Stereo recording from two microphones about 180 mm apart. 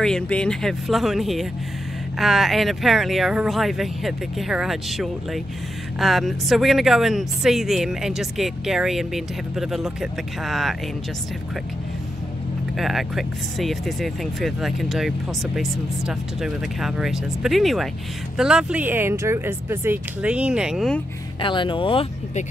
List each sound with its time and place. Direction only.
0.0 s speech: 5° left (ahead or behind)
12.7 s speech: centre (ahead or behind)
21.4 s speech: 25° left (ahead or behind)